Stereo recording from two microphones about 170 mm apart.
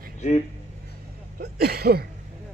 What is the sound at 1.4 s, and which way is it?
Speech, 65° right (ahead or behind).